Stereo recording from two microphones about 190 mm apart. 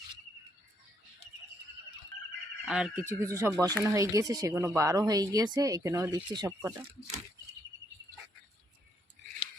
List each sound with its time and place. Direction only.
2.6 s speech: 5° right (ahead or behind); by 6.7 s 20° right (ahead or behind)